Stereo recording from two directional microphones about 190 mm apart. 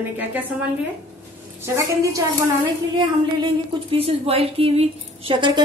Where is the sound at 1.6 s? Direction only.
15° right (ahead or behind).